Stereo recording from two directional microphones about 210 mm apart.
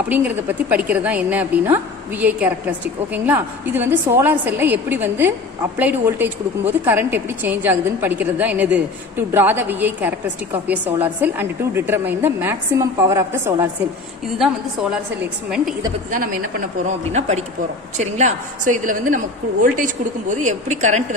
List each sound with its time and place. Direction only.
0.1 s a woman's voice: 10° right (ahead or behind)
16.8 s a woman's voice: 30° right (ahead or behind)